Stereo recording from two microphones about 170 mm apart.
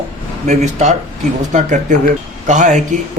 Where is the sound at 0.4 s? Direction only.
45° right (ahead or behind).